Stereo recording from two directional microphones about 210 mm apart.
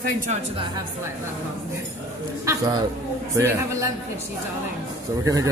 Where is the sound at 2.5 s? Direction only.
20° right (ahead or behind).